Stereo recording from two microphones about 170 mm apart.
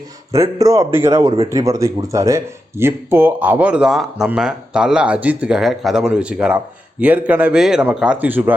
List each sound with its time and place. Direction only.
0.3 s speech: 20° right (ahead or behind)